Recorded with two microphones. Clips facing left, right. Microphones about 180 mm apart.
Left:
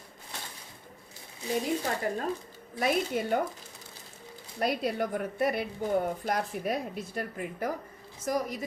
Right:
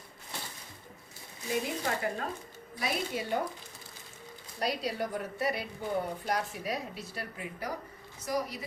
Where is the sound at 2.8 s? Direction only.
50° left (ahead or behind).